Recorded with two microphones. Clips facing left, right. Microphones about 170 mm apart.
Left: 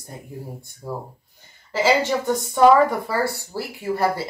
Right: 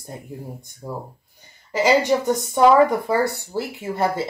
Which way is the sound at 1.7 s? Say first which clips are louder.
Right 2 dB; 15° right (ahead or behind).